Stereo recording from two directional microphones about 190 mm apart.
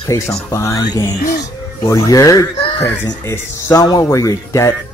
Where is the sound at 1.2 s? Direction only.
50° left (ahead or behind).